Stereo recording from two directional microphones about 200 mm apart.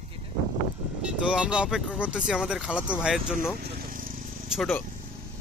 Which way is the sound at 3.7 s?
45° right (ahead or behind).